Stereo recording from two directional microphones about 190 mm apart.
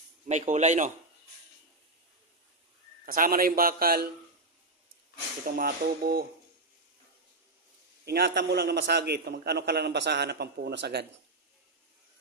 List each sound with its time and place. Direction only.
0.3 s a man's voice: 40° right (ahead or behind)
3.1 s a man's voice: 50° right (ahead or behind)
5.5 s a man's voice: 50° right (ahead or behind)
8.0 s a man's voice: 55° right (ahead or behind)